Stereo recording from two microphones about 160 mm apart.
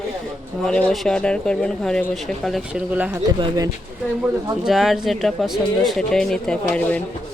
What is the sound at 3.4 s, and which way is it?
Speech, 25° right (ahead or behind).